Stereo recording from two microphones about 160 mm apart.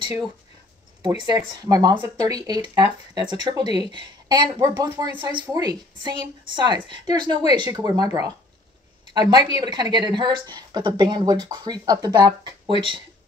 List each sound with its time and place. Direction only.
1.0 s speech: 30° right (ahead or behind)